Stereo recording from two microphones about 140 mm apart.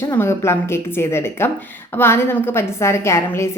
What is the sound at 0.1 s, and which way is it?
A woman's voice, 20° left (ahead or behind).